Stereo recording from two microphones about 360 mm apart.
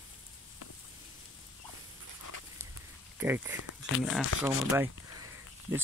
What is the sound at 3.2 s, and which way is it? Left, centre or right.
Speech, centre.